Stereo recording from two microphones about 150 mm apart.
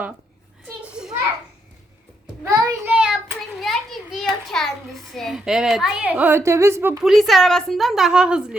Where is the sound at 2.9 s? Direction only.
10° right (ahead or behind).